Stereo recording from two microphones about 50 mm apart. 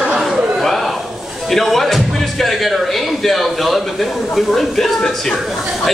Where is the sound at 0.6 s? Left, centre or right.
Centre.